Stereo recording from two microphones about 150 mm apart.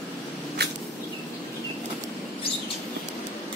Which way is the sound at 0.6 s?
90° right.